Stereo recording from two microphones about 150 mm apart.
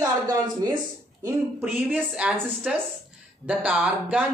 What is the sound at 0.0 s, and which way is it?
Speech, 25° right (ahead or behind).